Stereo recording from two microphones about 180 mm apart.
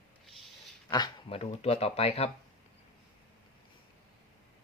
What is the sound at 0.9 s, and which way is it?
Speech, 25° left (ahead or behind).